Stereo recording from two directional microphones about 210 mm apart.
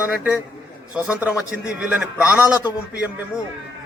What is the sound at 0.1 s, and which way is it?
A man's voice, 5° right (ahead or behind).